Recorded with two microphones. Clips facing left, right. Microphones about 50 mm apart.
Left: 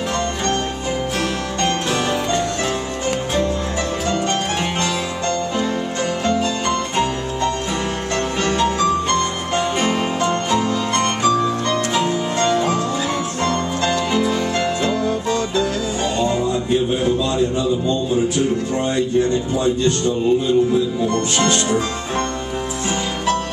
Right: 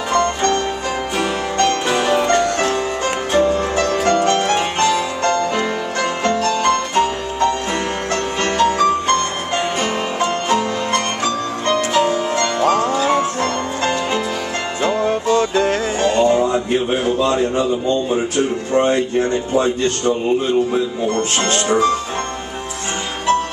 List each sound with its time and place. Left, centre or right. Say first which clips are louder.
0.1 s music: right 8 dB; right
2.0 s music: right 5 dB; right
8.4 s music: right 4 dB; right
10.2 s music: right 2 dB; right